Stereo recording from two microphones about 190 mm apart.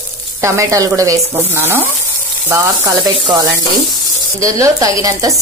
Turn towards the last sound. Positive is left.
turn(degrees=-20)  # may be behind; listen again after turning